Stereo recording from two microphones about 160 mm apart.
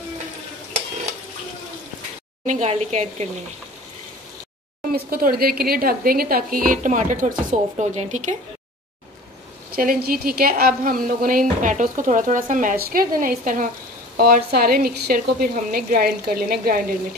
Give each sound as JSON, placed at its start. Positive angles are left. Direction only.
{"t": 2.4, "sound": "speech", "side_deg": -45}
{"t": 4.9, "sound": "a woman's voice", "side_deg": -70}
{"t": 9.7, "sound": "a woman's voice", "side_deg": -65}
{"t": 14.1, "sound": "a woman's voice", "side_deg": -70}